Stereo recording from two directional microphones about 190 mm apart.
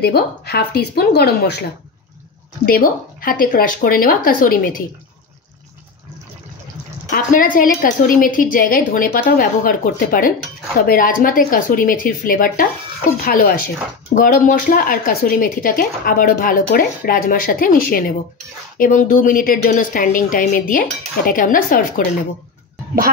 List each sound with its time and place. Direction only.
0.0 s a woman's voice: 55° left (ahead or behind)
7.1 s a woman's voice: 45° left (ahead or behind)